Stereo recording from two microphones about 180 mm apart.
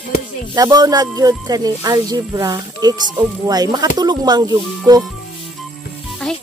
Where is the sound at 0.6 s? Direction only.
20° right (ahead or behind).